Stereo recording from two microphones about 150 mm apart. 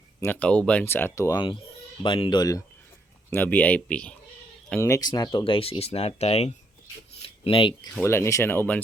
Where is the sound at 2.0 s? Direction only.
35° left (ahead or behind).